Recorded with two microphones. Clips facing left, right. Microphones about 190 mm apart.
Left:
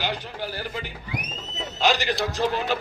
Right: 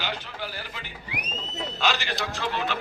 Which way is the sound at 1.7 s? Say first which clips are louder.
Left 6 dB; 40° left (ahead or behind).